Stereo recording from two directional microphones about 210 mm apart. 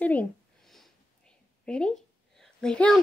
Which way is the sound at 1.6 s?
5° left (ahead or behind).